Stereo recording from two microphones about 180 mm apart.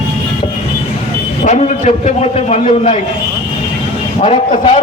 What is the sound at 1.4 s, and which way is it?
A man's voice, 40° left (ahead or behind).